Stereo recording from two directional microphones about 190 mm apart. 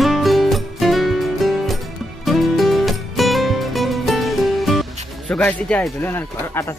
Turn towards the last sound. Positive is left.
turn(degrees=15)  # may be behind; listen again after turning